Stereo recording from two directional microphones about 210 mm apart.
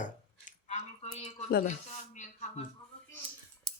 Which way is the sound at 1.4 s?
50° left (ahead or behind).